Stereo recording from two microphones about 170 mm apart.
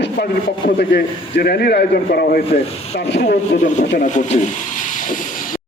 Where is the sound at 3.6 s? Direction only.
45° left (ahead or behind).